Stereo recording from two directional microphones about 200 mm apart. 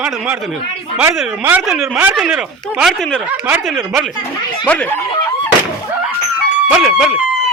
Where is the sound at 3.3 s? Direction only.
10° right (ahead or behind); by 4.9 s 5° left (ahead or behind).